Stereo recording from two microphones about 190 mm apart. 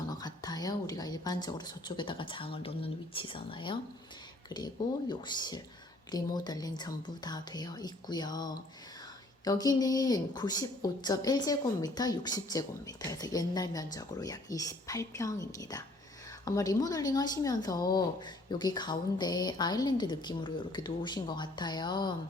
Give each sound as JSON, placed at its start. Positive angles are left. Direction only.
{"t": 0.1, "sound": "a woman's voice", "side_deg": 20}